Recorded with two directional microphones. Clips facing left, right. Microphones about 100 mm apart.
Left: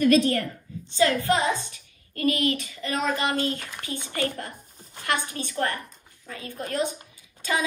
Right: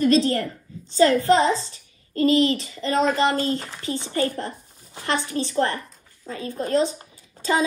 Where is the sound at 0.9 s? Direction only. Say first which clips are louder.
Right 5 dB; 40° right (ahead or behind).